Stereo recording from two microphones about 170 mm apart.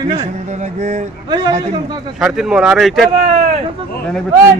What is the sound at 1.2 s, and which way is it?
Speech, 25° right (ahead or behind).